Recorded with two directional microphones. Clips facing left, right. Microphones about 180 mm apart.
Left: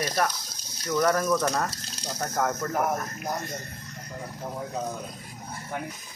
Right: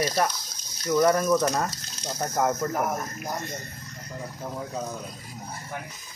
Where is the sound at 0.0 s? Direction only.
10° right (ahead or behind).